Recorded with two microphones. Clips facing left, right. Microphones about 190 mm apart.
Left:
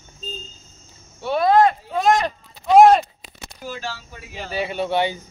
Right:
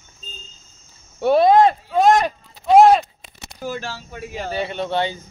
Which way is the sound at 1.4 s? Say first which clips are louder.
Right 1 dB; 20° right (ahead or behind).